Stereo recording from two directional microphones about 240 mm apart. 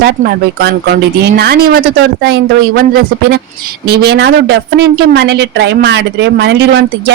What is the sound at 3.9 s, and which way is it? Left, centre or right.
Speech, right.